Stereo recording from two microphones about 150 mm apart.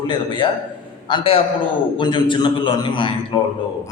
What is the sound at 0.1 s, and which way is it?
A man's voice, 30° left (ahead or behind).